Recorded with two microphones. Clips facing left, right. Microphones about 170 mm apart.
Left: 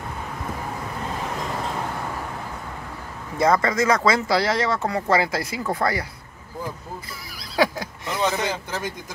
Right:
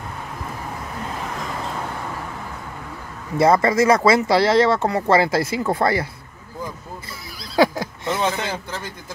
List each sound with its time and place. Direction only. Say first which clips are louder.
3.3 s speech: right 4 dB; 30° right (ahead or behind)
7.5 s neigh: right 4 dB; 25° right (ahead or behind)
8.4 s speech: left 1 dB; 20° left (ahead or behind)